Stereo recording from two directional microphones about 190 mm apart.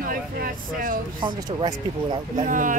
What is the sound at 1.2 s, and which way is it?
Speech, 20° right (ahead or behind).